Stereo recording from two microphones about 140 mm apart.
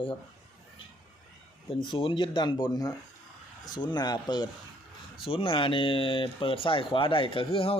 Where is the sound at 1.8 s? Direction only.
35° left (ahead or behind).